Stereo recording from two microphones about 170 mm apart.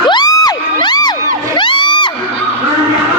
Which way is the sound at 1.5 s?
30° left (ahead or behind).